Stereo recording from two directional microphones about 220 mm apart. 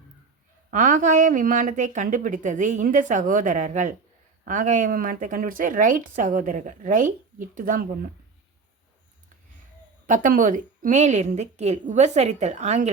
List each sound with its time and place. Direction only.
0.7 s a woman's voice: 35° right (ahead or behind)
10.1 s a woman's voice: 35° right (ahead or behind)